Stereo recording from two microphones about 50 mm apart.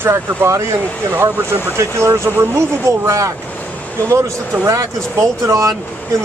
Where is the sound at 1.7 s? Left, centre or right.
Right.